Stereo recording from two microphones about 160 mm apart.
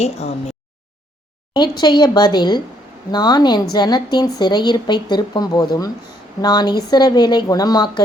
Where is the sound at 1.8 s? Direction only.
25° left (ahead or behind).